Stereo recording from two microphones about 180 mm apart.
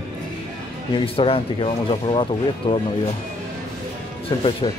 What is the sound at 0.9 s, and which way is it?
Speech, 30° left (ahead or behind).